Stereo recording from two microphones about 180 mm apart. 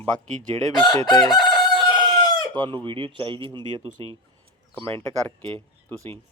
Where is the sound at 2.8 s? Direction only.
30° right (ahead or behind).